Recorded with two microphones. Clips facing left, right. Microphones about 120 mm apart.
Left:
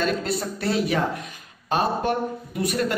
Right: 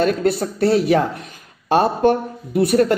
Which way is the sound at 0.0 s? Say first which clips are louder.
Right 7 dB; 50° right (ahead or behind).